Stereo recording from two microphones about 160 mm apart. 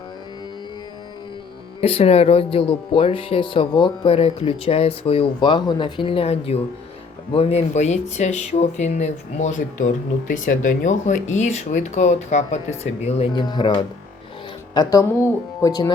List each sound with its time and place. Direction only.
1.8 s speech: 40° left (ahead or behind)
13.3 s speech: 25° left (ahead or behind)